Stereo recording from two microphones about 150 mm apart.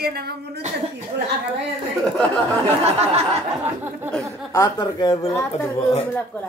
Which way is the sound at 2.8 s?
45° right (ahead or behind).